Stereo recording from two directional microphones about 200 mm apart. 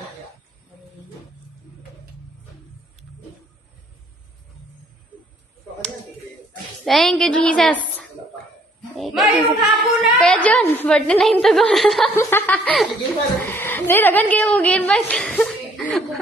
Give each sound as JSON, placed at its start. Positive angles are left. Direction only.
{"t": 6.8, "sound": "a woman's voice", "side_deg": 0}
{"t": 8.9, "sound": "a woman's voice", "side_deg": 0}
{"t": 12.2, "sound": "a woman's voice", "side_deg": 10}